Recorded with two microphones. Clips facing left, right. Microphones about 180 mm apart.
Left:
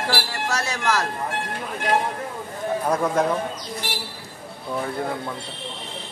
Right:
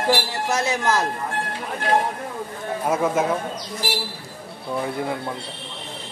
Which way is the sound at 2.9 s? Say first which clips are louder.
Right 1 dB; 5° right (ahead or behind).